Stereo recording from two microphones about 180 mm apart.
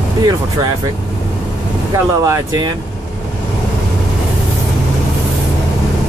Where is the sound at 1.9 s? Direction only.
15° right (ahead or behind).